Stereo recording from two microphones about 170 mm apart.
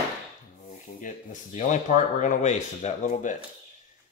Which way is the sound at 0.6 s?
50° left (ahead or behind).